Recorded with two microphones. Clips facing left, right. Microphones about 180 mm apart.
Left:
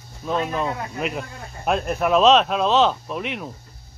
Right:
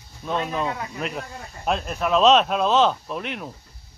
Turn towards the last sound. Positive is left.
turn(degrees=0)  # may be behind; listen again after turning